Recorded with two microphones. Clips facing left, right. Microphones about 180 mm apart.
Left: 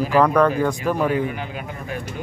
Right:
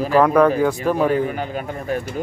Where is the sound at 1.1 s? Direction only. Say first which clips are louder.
Right 3 dB; 40° right (ahead or behind).